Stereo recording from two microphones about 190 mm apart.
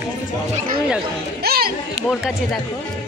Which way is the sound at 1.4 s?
55° right (ahead or behind).